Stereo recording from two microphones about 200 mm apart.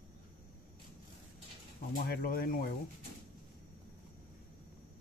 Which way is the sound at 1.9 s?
50° left (ahead or behind).